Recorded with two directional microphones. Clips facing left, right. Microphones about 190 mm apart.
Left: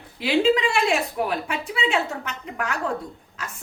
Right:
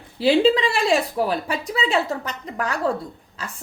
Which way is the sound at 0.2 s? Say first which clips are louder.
Right 3 dB; 35° right (ahead or behind).